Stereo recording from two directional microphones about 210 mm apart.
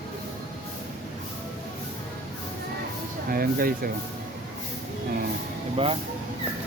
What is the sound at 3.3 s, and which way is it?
Speech, 45° right (ahead or behind).